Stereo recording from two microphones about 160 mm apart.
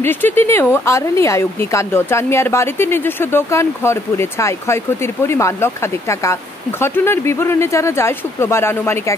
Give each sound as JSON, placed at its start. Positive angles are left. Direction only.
{"t": 0.0, "sound": "speech", "side_deg": 15}